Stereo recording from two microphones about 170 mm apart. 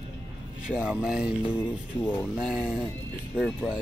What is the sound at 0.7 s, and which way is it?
Speech, 5° right (ahead or behind).